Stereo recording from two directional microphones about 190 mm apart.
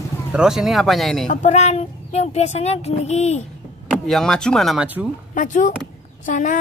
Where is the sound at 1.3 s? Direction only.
40° left (ahead or behind).